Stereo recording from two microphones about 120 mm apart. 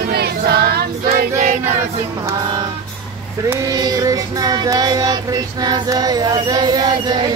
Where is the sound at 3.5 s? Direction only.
30° right (ahead or behind).